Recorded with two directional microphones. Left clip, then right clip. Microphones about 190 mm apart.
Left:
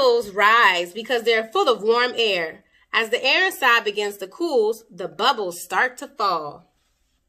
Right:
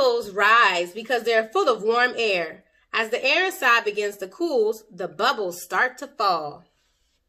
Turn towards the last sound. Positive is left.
turn(degrees=40)  # may be behind; listen again after turning